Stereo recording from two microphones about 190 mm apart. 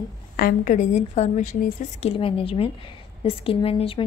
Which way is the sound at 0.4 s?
45° left (ahead or behind).